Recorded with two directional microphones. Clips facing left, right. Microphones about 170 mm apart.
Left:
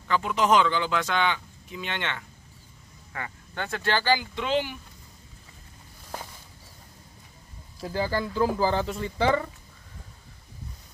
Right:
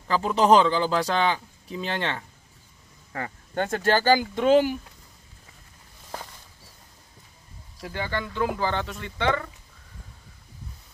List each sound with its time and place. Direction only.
0.1 s a man's voice: 35° right (ahead or behind)
7.8 s speech: 35° left (ahead or behind)